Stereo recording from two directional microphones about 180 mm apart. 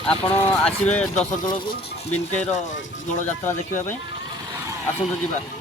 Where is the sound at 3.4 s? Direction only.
10° left (ahead or behind).